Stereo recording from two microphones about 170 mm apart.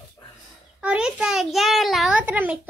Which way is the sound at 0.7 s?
5° right (ahead or behind).